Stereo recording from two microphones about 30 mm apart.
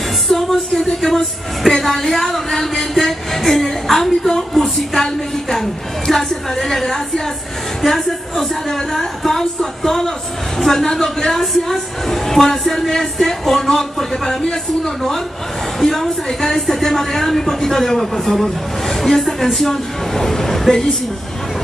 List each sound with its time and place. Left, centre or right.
0.3 s speech: centre
4.4 s a sound: centre
6.6 s a woman's voice: centre
14.1 s speech: centre
15.8 s a woman's voice: centre